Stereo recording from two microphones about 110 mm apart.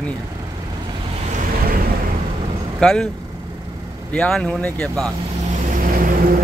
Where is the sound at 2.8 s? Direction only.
5° left (ahead or behind).